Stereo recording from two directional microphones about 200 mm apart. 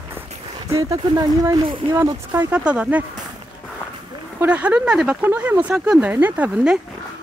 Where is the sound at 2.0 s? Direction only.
10° right (ahead or behind).